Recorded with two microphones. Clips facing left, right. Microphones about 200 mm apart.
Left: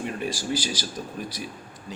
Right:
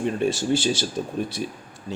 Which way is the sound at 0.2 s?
25° right (ahead or behind).